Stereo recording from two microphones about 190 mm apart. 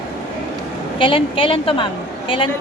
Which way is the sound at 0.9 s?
25° left (ahead or behind).